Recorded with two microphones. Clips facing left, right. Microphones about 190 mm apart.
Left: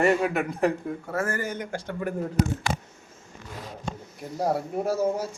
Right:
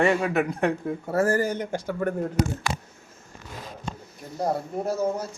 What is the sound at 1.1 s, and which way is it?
Speech, 35° right (ahead or behind).